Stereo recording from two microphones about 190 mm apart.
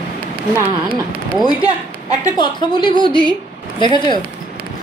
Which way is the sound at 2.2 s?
25° left (ahead or behind).